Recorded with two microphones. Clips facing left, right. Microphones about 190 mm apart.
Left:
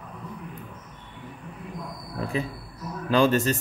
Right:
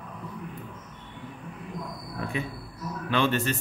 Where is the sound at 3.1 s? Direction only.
40° left (ahead or behind).